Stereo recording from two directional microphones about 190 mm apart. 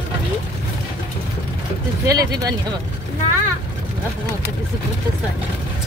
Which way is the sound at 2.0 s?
20° right (ahead or behind).